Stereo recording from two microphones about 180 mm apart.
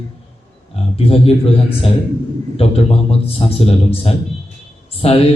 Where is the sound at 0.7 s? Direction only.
35° left (ahead or behind).